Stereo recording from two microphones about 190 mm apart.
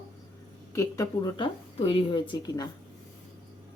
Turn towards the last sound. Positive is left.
turn(degrees=25)  # may be behind; listen again after turning